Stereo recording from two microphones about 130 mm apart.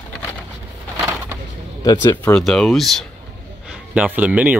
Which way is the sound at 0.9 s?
20° right (ahead or behind).